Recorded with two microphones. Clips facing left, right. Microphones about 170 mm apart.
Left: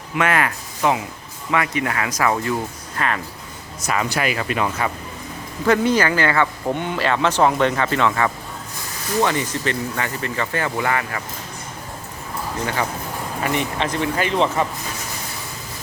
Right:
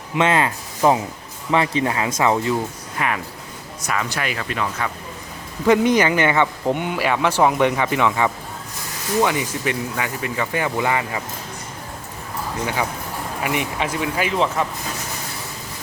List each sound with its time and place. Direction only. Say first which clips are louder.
0.2 s speech: right 2 dB; 25° right (ahead or behind)
3.8 s speech: left 3 dB; 10° left (ahead or behind)
5.6 s speech: right 2 dB; 15° right (ahead or behind)
12.6 s speech: even; 10° right (ahead or behind)